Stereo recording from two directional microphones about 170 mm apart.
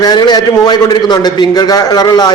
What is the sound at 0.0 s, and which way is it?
A man's voice, 25° left (ahead or behind).